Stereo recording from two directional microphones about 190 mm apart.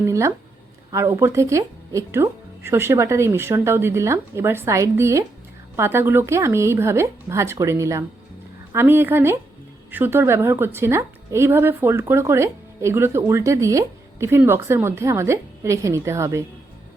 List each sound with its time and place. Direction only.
0.0 s a woman's voice: 15° right (ahead or behind)